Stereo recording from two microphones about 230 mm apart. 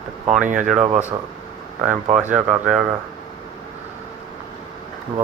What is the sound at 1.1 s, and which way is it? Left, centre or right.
Speech, right.